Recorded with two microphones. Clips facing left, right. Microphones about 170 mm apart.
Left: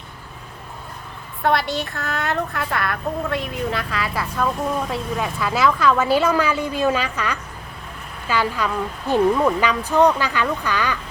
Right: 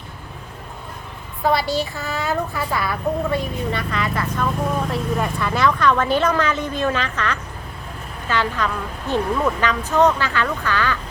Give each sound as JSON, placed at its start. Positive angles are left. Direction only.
{"t": 1.4, "sound": "a woman's voice", "side_deg": 0}